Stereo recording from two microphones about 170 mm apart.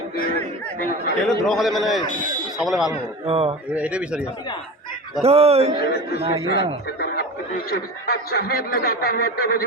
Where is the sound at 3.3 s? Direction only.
35° right (ahead or behind).